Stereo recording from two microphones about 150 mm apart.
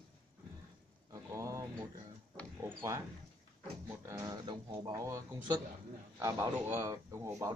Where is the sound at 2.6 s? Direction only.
20° right (ahead or behind).